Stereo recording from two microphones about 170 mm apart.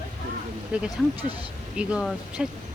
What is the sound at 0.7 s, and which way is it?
Speech, 5° right (ahead or behind).